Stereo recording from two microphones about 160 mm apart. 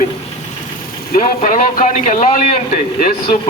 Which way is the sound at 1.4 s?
55° left (ahead or behind).